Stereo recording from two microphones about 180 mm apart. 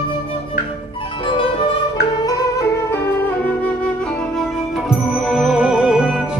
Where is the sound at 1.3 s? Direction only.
30° left (ahead or behind).